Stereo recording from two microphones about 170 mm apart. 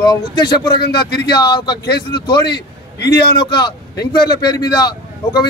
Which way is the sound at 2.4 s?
80° left.